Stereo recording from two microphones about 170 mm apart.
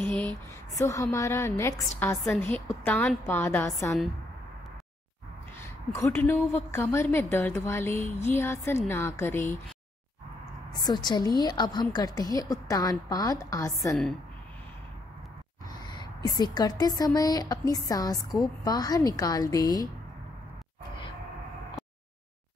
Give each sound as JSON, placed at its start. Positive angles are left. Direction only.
{"t": 0.0, "sound": "a sound", "side_deg": 10}
{"t": 0.7, "sound": "a woman's voice", "side_deg": 20}
{"t": 5.9, "sound": "a woman's voice", "side_deg": 15}
{"t": 10.7, "sound": "a woman's voice", "side_deg": 25}
{"t": 15.7, "sound": "a woman's voice", "side_deg": 25}